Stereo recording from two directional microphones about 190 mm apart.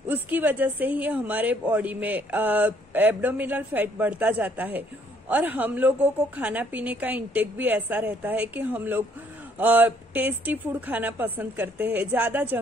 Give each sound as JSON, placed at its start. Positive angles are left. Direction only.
{"t": 0.1, "sound": "a woman's voice", "side_deg": -10}